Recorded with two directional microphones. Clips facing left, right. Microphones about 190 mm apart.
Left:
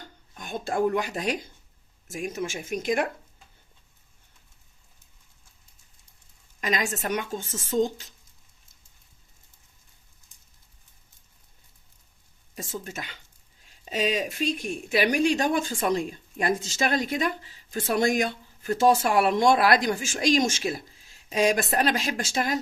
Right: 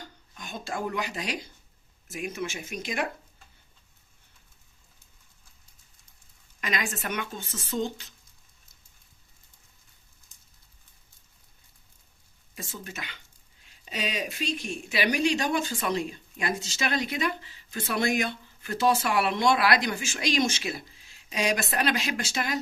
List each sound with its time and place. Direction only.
0.3 s speech: 50° left (ahead or behind)
6.6 s speech: 40° left (ahead or behind)
12.5 s speech: 45° left (ahead or behind)